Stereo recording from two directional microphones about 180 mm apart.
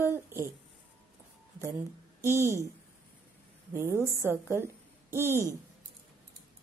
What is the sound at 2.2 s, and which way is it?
Speech, 15° right (ahead or behind).